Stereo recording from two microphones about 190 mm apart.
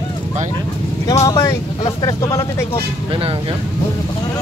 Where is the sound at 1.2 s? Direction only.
20° left (ahead or behind).